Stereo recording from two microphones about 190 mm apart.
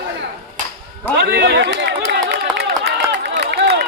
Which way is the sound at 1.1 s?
60° right (ahead or behind).